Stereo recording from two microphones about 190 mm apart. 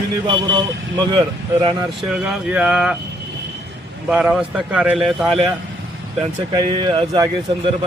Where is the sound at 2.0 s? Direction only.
5° right (ahead or behind).